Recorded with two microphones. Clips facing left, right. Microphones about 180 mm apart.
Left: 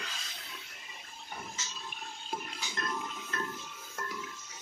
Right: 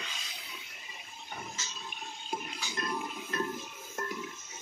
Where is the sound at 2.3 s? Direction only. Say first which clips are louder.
Right 2 dB; 5° right (ahead or behind).